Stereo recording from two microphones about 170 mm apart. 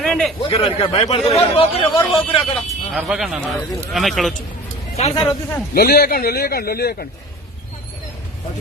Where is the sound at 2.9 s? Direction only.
Centre (ahead or behind).